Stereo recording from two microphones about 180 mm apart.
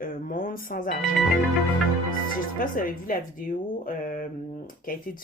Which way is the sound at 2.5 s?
50° left (ahead or behind).